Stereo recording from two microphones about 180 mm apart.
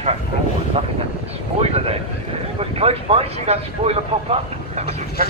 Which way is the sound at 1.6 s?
35° right (ahead or behind).